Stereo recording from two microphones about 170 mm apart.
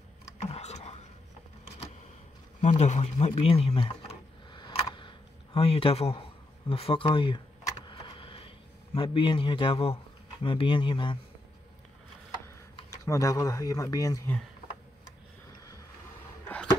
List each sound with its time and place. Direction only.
0.5 s whispering: 40° left (ahead or behind)
2.6 s speech: 40° left (ahead or behind)
4.5 s camera: 25° left (ahead or behind)
6.7 s a sound: 30° left (ahead or behind)
10.4 s speech: 30° left (ahead or behind)
12.9 s speech: 20° left (ahead or behind)